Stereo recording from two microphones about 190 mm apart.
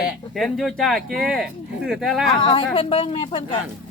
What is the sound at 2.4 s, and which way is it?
Speech, 25° left (ahead or behind).